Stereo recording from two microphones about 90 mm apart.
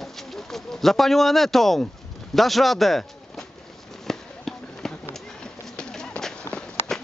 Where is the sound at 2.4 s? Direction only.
Centre (ahead or behind).